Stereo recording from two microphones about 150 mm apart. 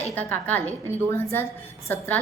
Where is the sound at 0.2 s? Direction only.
10° left (ahead or behind).